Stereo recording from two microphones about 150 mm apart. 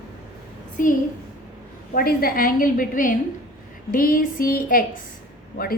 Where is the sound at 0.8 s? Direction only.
65° left (ahead or behind).